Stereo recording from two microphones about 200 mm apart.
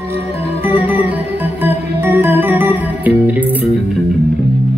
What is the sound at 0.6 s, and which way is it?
Music, 10° right (ahead or behind).